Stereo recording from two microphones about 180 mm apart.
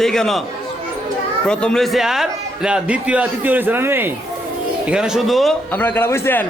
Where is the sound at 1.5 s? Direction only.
5° left (ahead or behind).